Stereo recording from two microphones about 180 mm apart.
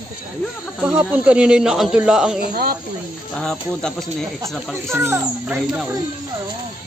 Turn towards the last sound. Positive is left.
turn(degrees=-10)  # may be behind; listen again after turning